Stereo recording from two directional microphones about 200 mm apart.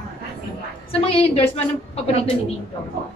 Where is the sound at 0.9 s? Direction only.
30° left (ahead or behind).